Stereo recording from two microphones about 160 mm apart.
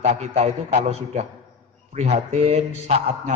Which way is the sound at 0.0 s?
45° right (ahead or behind).